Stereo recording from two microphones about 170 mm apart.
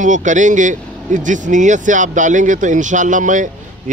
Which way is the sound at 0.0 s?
45° right (ahead or behind).